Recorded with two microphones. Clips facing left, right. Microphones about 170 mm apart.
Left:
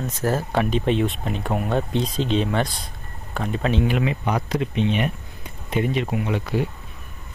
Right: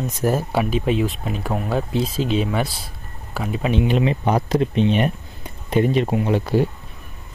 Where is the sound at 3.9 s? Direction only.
30° right (ahead or behind).